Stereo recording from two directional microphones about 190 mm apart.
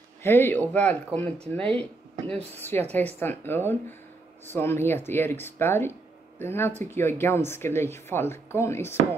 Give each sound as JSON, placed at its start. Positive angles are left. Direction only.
{"t": 0.2, "sound": "speech", "side_deg": 10}
{"t": 2.2, "sound": "speech", "side_deg": -30}
{"t": 2.9, "sound": "speech", "side_deg": 10}